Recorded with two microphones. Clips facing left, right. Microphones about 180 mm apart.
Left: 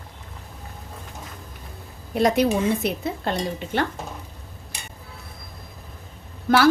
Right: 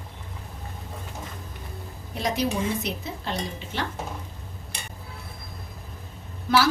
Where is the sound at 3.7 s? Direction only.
55° left (ahead or behind).